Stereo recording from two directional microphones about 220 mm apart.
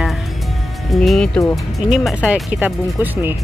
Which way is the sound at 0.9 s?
Centre (ahead or behind).